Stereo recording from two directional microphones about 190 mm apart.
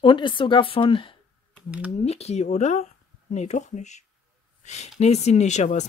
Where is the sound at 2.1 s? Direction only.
35° left (ahead or behind).